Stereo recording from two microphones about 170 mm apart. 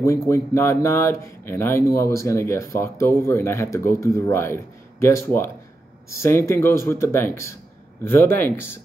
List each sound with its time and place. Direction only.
0.3 s speech: 15° left (ahead or behind)